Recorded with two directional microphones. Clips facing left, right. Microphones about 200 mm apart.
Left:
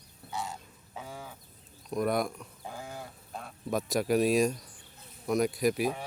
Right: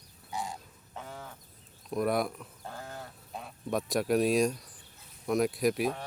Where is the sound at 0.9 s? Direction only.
10° left (ahead or behind).